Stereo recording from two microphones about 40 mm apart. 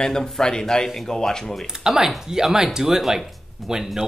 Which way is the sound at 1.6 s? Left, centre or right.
Centre.